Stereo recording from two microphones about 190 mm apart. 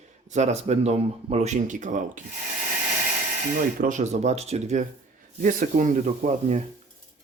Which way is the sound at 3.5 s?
45° right (ahead or behind).